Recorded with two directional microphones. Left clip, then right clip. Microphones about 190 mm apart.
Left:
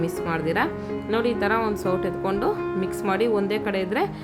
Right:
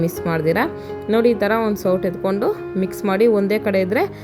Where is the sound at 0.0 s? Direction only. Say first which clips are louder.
Right 5 dB; 20° right (ahead or behind).